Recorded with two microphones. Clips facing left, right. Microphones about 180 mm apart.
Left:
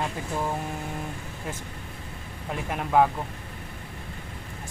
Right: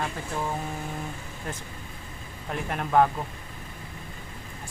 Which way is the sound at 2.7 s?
5° left (ahead or behind).